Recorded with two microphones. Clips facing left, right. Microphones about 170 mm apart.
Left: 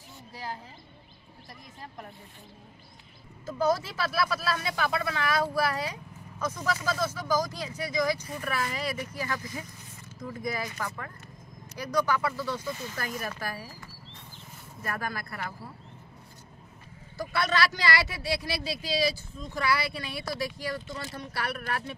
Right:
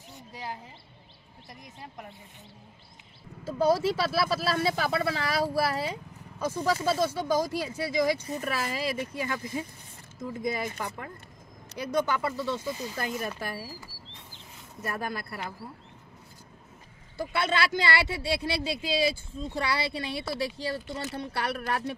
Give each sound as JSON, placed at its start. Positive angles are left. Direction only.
{"t": 0.3, "sound": "speech", "side_deg": -20}
{"t": 3.4, "sound": "speech", "side_deg": -30}
{"t": 14.8, "sound": "speech", "side_deg": -20}
{"t": 17.2, "sound": "speech", "side_deg": -25}